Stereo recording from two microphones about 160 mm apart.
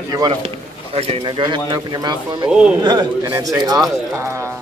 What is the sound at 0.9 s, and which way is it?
Speech, 35° right (ahead or behind).